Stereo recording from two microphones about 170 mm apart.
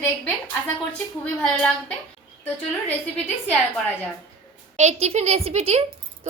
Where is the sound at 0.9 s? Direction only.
5° left (ahead or behind).